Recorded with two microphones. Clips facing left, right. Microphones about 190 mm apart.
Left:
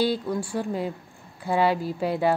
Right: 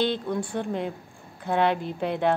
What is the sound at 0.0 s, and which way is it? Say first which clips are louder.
A woman's voice: left 1 dB; 5° left (ahead or behind).